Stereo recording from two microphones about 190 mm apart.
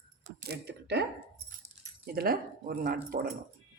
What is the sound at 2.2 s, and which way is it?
Speech, 50° right (ahead or behind).